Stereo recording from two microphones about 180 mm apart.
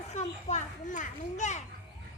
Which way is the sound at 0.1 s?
40° left (ahead or behind).